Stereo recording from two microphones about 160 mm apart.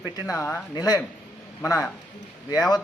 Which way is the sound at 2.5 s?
25° left (ahead or behind).